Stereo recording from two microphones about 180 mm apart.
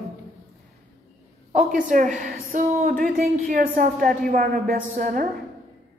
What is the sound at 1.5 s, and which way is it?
A woman's voice, 45° right (ahead or behind).